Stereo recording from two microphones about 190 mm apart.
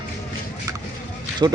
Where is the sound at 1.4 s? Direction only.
20° right (ahead or behind).